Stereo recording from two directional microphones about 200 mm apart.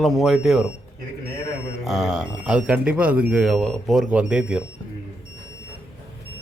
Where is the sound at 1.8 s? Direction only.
Centre (ahead or behind).